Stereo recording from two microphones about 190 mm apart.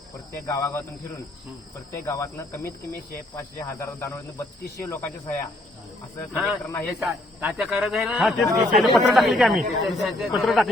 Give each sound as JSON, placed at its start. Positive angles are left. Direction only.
{"t": 0.4, "sound": "speech", "side_deg": 15}
{"t": 1.9, "sound": "speech", "side_deg": 15}
{"t": 7.0, "sound": "speech", "side_deg": 0}